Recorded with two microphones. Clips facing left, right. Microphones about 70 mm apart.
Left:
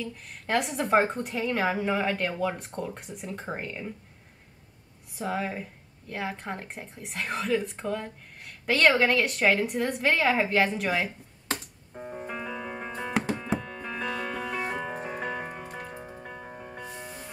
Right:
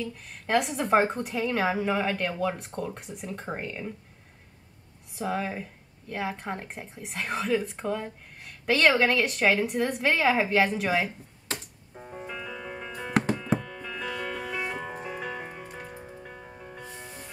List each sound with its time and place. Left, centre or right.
0.0 s speech: centre
5.1 s speech: centre
11.9 s music: left
13.1 s music: centre
13.4 s music: centre
13.7 s music: left
16.8 s music: centre